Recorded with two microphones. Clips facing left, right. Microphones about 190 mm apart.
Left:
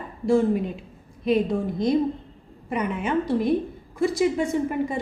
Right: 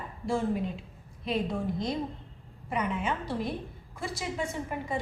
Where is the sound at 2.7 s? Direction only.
60° left (ahead or behind).